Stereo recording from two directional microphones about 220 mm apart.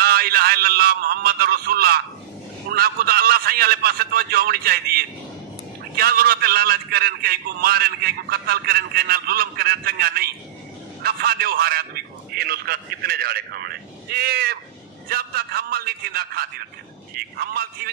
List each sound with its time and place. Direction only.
0.0 s a man's voice: 45° right (ahead or behind)